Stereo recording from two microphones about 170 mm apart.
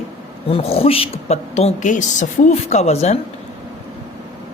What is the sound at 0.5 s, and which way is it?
A woman's voice, 35° left (ahead or behind).